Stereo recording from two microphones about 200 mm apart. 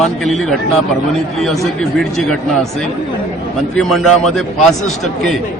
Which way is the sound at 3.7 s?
Centre (ahead or behind).